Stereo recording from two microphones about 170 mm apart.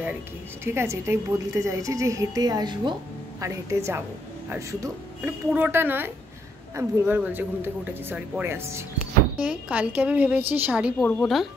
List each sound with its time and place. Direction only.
0.7 s a woman's voice: 15° right (ahead or behind)
11.1 s speech: centre (ahead or behind)